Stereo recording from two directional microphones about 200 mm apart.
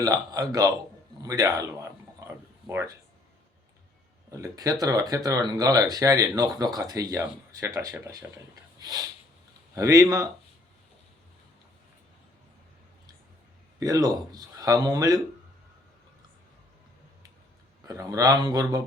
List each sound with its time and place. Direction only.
0.0 s speech: 20° right (ahead or behind)
1.2 s a sound: 15° right (ahead or behind)
4.3 s speech: 15° right (ahead or behind)
9.7 s speech: 15° right (ahead or behind)
13.7 s speech: 15° right (ahead or behind)
17.8 s speech: 15° right (ahead or behind)